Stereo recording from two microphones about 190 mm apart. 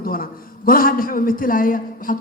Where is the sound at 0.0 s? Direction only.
50° left (ahead or behind).